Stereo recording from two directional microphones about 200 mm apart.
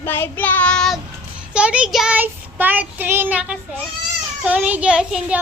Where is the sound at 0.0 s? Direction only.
10° left (ahead or behind).